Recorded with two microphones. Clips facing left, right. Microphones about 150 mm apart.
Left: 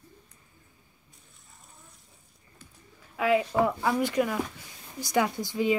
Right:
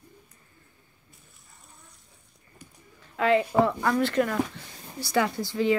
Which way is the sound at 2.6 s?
15° right (ahead or behind).